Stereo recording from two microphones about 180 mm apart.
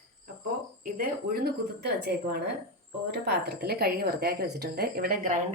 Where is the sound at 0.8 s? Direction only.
55° right (ahead or behind).